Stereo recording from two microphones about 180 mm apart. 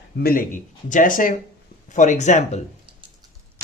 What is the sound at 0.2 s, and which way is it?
Speech, 50° left (ahead or behind).